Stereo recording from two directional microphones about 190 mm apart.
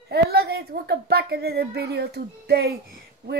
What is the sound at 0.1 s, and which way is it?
A woman's voice, 55° right (ahead or behind).